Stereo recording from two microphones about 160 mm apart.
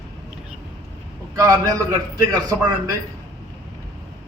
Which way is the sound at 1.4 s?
20° right (ahead or behind).